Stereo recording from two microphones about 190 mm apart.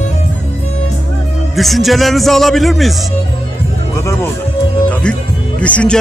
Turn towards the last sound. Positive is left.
turn(degrees=5)  # may be behind; listen again after turning